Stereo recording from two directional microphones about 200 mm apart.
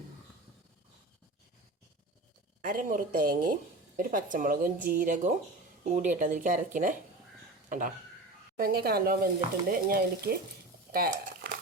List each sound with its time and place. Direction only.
2.6 s a woman's voice: 40° right (ahead or behind)
10.9 s squish: 45° right (ahead or behind)